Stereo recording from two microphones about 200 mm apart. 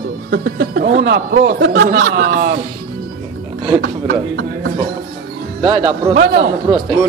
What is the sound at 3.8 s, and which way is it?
Speech, 60° right (ahead or behind).